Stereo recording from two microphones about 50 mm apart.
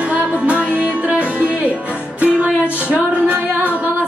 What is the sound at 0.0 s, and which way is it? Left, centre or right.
Music, right.